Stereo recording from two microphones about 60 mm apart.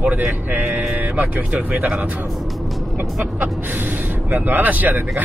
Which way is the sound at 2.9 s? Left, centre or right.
Right.